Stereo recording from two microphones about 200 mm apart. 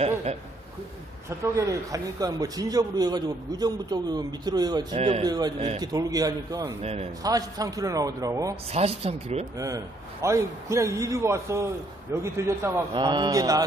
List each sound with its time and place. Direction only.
1.4 s a man's voice: 15° right (ahead or behind)
4.9 s speech: 30° right (ahead or behind)
5.2 s a man's voice: 20° right (ahead or behind)
6.8 s speech: 30° right (ahead or behind)
7.2 s a man's voice: 20° right (ahead or behind)
8.7 s speech: 30° right (ahead or behind)
10.2 s a man's voice: 15° right (ahead or behind)